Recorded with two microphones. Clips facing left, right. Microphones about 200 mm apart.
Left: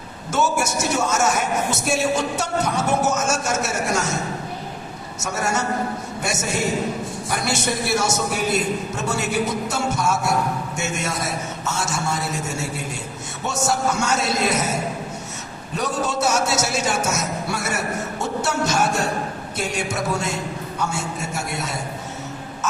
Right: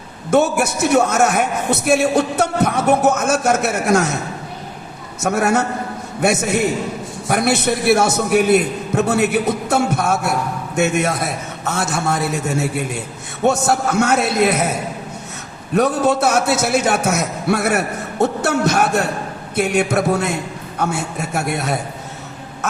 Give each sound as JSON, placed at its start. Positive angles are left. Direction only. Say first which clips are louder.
{"t": 0.3, "sound": "a man's voice", "louder": "right 6 dB", "side_deg": -60}
{"t": 5.2, "sound": "a man's voice", "louder": "right 7 dB", "side_deg": -60}
{"t": 15.7, "sound": "a man's voice", "louder": "right 9 dB", "side_deg": -60}